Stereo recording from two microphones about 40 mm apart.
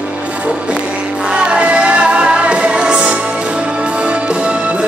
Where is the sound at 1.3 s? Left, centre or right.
Right.